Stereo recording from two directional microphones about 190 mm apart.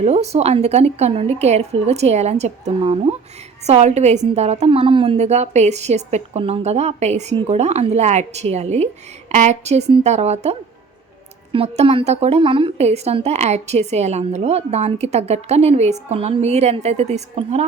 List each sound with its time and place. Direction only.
0.0 s a woman's voice: 35° right (ahead or behind)